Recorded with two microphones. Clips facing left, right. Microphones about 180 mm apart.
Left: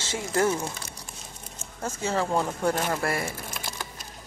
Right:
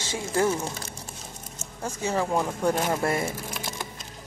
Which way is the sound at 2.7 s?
15° right (ahead or behind).